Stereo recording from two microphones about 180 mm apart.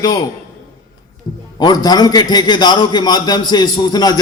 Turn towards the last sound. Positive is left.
turn(degrees=25)  # may be behind; listen again after turning